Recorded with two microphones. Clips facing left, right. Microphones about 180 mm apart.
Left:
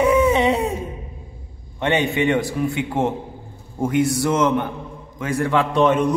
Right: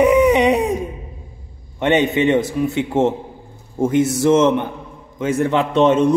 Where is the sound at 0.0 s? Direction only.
15° right (ahead or behind).